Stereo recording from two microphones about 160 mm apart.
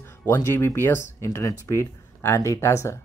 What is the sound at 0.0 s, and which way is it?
Speech, 15° left (ahead or behind).